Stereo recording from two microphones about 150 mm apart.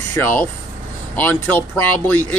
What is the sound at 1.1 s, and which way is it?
Speech, 10° left (ahead or behind).